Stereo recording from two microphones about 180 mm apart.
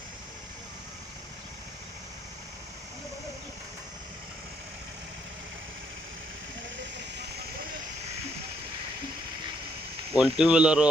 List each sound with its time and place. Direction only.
10.2 s speech: 5° right (ahead or behind)